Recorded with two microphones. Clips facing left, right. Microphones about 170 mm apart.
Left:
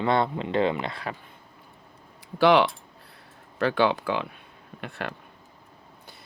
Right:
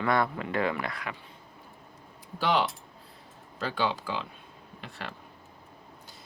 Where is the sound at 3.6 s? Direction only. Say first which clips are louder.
Left 7 dB; 65° left (ahead or behind).